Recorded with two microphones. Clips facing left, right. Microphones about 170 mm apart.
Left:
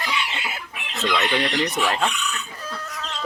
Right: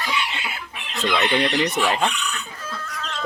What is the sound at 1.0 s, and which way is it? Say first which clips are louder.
Speech: right 2 dB; centre (ahead or behind).